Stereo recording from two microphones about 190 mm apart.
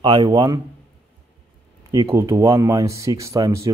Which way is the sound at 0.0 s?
20° right (ahead or behind).